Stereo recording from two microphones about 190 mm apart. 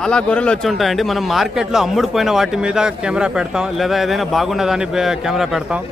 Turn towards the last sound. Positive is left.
turn(degrees=0)  # may be behind; listen again after turning